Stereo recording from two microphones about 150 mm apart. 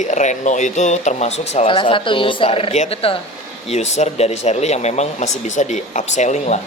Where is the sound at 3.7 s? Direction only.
50° left (ahead or behind).